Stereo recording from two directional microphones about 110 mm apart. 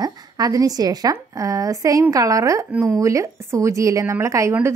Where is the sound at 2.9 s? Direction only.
30° right (ahead or behind).